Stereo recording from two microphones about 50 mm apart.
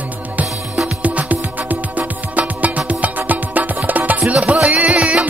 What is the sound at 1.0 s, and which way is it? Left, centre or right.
Music, right.